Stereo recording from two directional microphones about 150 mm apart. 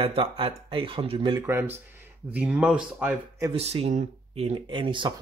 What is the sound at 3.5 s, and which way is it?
Speech, 45° right (ahead or behind).